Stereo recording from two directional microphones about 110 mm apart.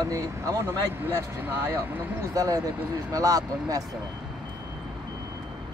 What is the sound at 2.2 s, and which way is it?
Speech, 35° right (ahead or behind).